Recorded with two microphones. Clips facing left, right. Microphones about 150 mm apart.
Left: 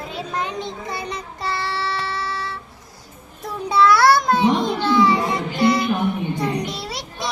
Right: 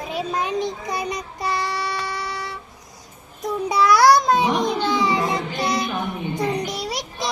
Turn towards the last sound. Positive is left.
turn(degrees=-20)  # may be behind; listen again after turning